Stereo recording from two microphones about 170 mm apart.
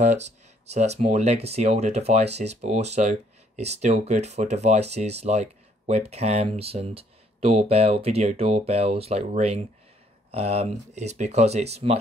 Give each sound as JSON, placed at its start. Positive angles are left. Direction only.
{"t": 0.0, "sound": "speech", "side_deg": -45}